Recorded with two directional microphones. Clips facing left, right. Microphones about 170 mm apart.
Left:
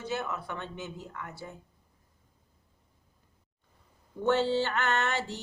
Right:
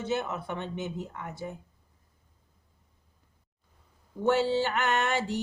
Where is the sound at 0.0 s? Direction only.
20° right (ahead or behind).